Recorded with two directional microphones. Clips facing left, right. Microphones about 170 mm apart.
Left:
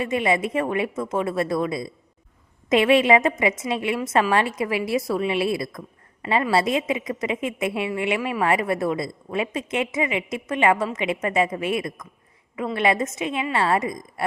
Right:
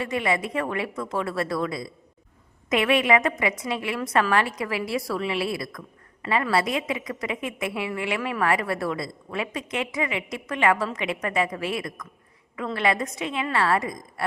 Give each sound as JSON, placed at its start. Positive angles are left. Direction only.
{"t": 0.0, "sound": "a woman's voice", "side_deg": 20}